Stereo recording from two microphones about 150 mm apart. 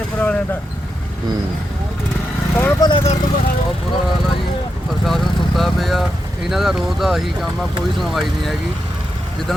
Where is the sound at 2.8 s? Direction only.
30° left (ahead or behind).